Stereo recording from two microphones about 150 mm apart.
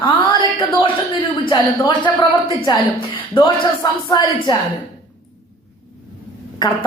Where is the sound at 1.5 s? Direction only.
30° left (ahead or behind).